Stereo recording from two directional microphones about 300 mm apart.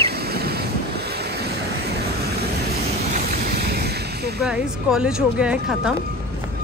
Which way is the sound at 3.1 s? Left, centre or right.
Right.